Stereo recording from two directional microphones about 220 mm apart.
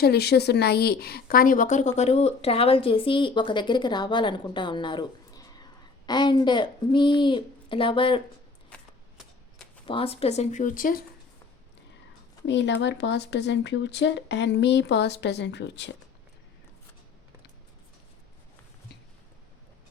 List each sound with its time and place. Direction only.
0.0 s speech: 45° left (ahead or behind); by 8.2 s 25° left (ahead or behind)
8.7 s shuffling cards: 5° left (ahead or behind)
9.8 s speech: 25° left (ahead or behind)
12.5 s speech: 55° left (ahead or behind)